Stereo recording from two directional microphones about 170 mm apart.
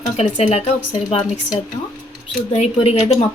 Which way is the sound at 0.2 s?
40° left (ahead or behind).